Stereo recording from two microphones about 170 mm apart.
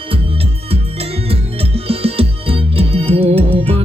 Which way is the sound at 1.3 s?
35° right (ahead or behind).